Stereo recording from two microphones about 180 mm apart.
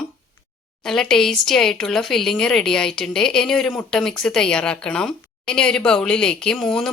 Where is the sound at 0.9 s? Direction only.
5° left (ahead or behind).